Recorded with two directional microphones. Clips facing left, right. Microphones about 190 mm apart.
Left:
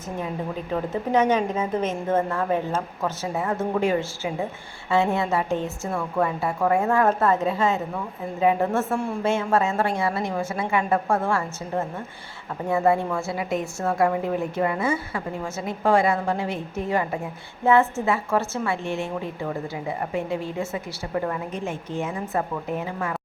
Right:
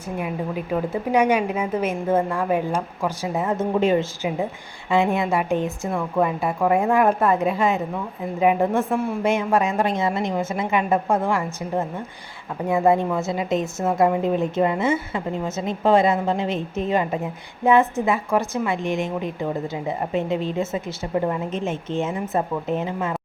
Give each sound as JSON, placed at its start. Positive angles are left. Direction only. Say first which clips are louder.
{"t": 0.2, "sound": "a woman's voice", "louder": "right 2 dB", "side_deg": -10}